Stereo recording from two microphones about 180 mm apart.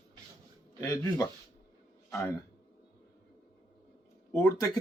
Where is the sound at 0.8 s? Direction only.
15° left (ahead or behind).